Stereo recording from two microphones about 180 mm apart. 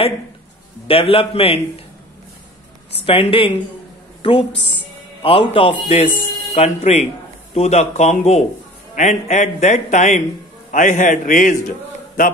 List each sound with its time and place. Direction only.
0.8 s a man's voice: 30° left (ahead or behind)
3.1 s a woman's voice: 30° left (ahead or behind); by 11.5 s 45° left (ahead or behind)